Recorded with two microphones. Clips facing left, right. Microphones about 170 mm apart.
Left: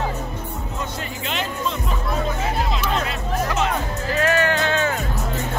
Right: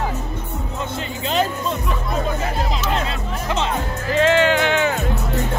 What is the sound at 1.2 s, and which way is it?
Music, 35° right (ahead or behind).